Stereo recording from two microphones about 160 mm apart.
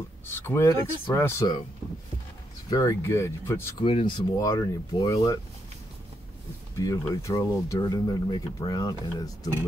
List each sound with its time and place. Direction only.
0.3 s speech: 15° left (ahead or behind)
2.7 s speech: 20° left (ahead or behind)
3.8 s speech: 35° left (ahead or behind)
4.4 s speech: 20° left (ahead or behind)
6.8 s speech: 20° left (ahead or behind)